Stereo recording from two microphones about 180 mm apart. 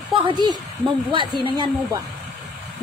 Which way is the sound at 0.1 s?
25° right (ahead or behind).